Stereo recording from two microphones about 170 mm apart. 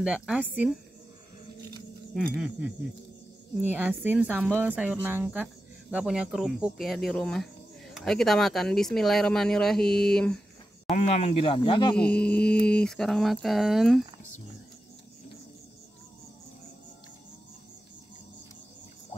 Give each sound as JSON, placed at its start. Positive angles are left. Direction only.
{"t": 0.0, "sound": "speech", "side_deg": -5}
{"t": 2.1, "sound": "speech", "side_deg": -5}
{"t": 10.9, "sound": "speech", "side_deg": 40}
{"t": 11.9, "sound": "speech", "side_deg": 5}